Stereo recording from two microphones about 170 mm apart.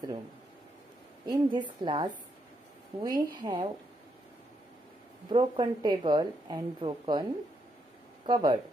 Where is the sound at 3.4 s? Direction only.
25° right (ahead or behind).